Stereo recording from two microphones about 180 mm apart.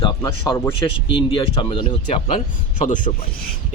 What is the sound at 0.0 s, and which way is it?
Speech, 20° left (ahead or behind).